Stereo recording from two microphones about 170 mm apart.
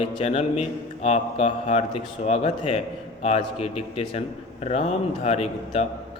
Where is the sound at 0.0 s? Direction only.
30° left (ahead or behind).